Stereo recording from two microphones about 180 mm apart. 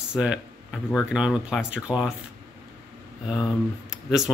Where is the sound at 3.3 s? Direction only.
5° right (ahead or behind).